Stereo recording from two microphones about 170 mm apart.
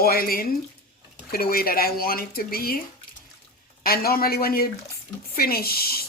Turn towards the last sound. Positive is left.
turn(degrees=65)  # may be behind; listen again after turning